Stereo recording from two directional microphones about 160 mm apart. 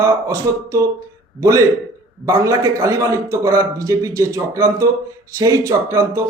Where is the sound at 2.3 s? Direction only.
20° right (ahead or behind).